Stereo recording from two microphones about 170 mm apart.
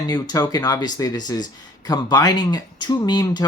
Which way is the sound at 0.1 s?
25° left (ahead or behind).